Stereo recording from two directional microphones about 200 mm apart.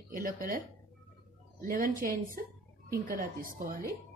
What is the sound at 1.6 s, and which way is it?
A woman's voice, 45° right (ahead or behind).